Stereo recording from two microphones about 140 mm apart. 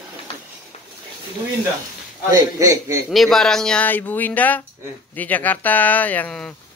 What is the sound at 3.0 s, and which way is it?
Speech, centre (ahead or behind).